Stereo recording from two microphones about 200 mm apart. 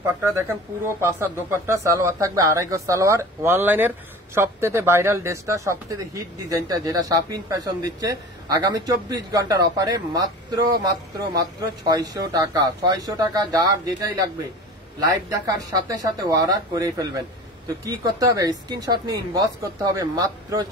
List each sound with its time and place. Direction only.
0.3 s speech: 10° right (ahead or behind)